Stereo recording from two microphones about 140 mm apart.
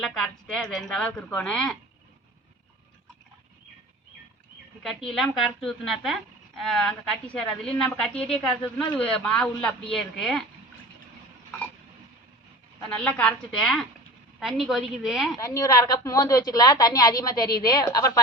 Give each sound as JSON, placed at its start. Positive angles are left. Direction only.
{"t": 0.0, "sound": "a woman's voice", "side_deg": 0}
{"t": 4.8, "sound": "a woman's voice", "side_deg": 0}
{"t": 12.9, "sound": "a woman's voice", "side_deg": 10}
{"t": 15.4, "sound": "a woman's voice", "side_deg": 25}